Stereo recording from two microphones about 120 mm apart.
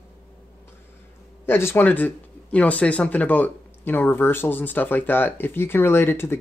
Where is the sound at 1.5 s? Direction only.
20° left (ahead or behind).